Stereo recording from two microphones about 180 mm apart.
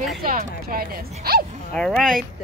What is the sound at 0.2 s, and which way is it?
Speech, 50° right (ahead or behind).